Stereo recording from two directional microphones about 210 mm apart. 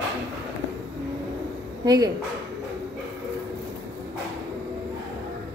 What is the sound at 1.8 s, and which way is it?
Speech, 20° right (ahead or behind).